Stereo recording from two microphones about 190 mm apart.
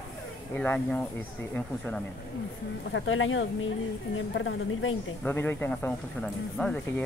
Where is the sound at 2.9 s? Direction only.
90° left.